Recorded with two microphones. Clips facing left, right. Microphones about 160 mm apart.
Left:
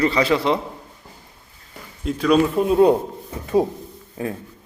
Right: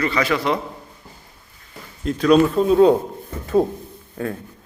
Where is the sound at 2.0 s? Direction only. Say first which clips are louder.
Right 2 dB; 5° left (ahead or behind).